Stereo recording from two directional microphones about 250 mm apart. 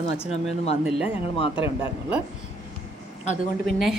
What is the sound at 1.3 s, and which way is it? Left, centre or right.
Speech, left.